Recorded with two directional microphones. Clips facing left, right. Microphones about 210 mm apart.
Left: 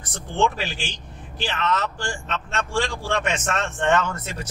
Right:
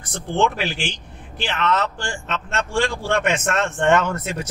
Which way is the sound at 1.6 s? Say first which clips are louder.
Right 3 dB; 60° right (ahead or behind).